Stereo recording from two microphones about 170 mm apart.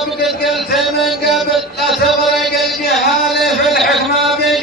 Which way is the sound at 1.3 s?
Centre (ahead or behind).